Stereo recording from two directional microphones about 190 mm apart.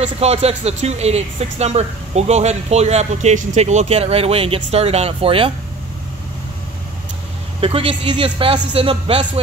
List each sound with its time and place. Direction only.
0.0 s speech: 35° right (ahead or behind)
7.6 s speech: 30° right (ahead or behind)